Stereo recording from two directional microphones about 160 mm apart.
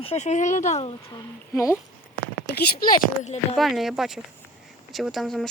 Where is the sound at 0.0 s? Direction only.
40° left (ahead or behind).